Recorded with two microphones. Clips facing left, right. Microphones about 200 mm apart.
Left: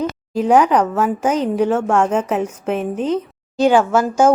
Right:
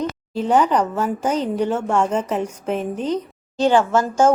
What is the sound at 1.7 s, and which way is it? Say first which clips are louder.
Speech: left 4 dB; 90° left.